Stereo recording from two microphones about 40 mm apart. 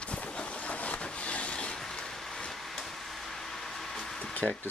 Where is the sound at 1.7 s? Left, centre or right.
Centre.